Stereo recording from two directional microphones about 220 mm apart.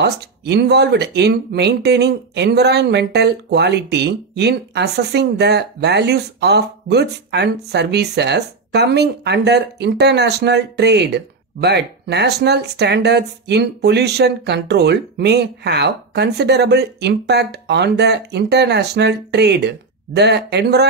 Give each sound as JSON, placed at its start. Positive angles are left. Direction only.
{"t": 0.0, "sound": "speech", "side_deg": -50}